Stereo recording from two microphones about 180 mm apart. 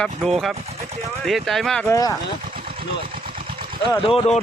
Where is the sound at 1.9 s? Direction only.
20° left (ahead or behind).